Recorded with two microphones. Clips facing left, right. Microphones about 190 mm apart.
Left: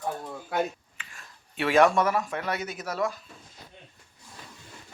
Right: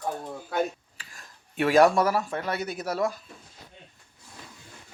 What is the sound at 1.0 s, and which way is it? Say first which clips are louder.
Speech: left 1 dB; 40° right (ahead or behind).